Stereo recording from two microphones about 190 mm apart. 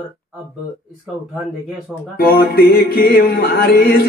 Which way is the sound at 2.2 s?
55° left (ahead or behind).